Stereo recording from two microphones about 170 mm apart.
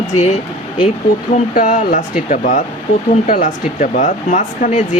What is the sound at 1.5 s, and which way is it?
Speech, 50° left (ahead or behind).